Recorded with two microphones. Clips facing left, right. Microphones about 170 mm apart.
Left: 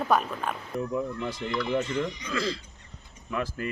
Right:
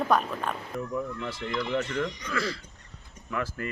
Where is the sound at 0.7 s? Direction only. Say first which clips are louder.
Left 5 dB; 20° left (ahead or behind).